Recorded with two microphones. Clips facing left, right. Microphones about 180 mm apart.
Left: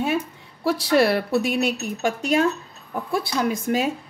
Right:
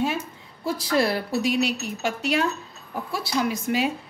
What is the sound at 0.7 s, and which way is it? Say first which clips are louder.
A woman's voice: left 4 dB; 70° left (ahead or behind).